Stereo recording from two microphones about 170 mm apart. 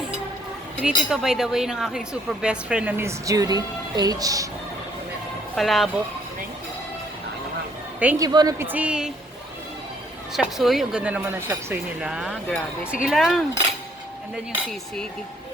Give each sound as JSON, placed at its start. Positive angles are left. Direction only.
{"t": 0.8, "sound": "speech", "side_deg": -5}
{"t": 5.5, "sound": "speech", "side_deg": 0}
{"t": 8.2, "sound": "a woman's voice", "side_deg": -25}
{"t": 10.3, "sound": "speech", "side_deg": 0}
{"t": 12.5, "sound": "speech", "side_deg": 5}
{"t": 12.9, "sound": "speech", "side_deg": -5}